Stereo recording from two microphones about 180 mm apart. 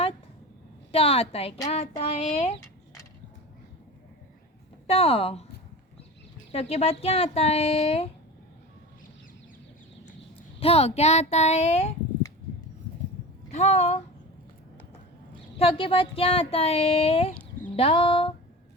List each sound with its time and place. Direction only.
0.9 s speech: 35° left (ahead or behind)
4.9 s speech: 35° left (ahead or behind)
6.5 s speech: 35° left (ahead or behind)
10.6 s speech: 35° left (ahead or behind)
13.5 s speech: 40° left (ahead or behind)
15.5 s speech: 35° left (ahead or behind)